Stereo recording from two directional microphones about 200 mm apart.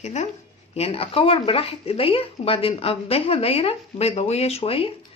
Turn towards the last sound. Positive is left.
turn(degrees=30)  # may be behind; listen again after turning